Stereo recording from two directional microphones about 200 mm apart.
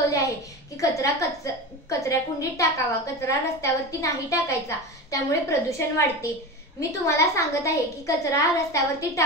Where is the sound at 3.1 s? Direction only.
15° left (ahead or behind).